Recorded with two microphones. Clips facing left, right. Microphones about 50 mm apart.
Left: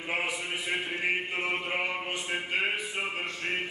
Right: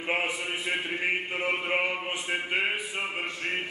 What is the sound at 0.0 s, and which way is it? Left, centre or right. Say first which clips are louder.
Speech: right 3 dB; right.